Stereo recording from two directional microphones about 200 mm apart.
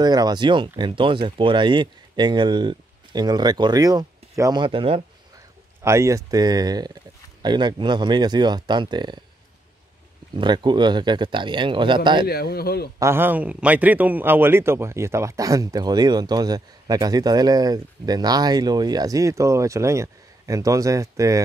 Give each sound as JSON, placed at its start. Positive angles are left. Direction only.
{"t": 0.0, "sound": "speech", "side_deg": -20}
{"t": 5.9, "sound": "speech", "side_deg": -15}
{"t": 10.3, "sound": "speech", "side_deg": -20}
{"t": 12.3, "sound": "a man's voice", "side_deg": 50}
{"t": 13.0, "sound": "a man's voice", "side_deg": -10}